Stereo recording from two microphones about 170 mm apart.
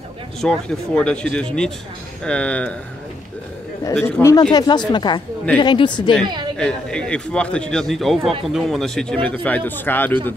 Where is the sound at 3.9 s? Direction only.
5° left (ahead or behind).